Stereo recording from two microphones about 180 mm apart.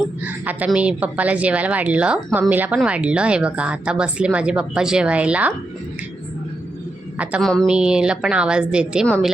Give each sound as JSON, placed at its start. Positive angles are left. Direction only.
{"t": 0.3, "sound": "a woman's voice", "side_deg": -10}
{"t": 7.2, "sound": "a woman's voice", "side_deg": -5}
{"t": 9.0, "sound": "a woman's voice", "side_deg": 5}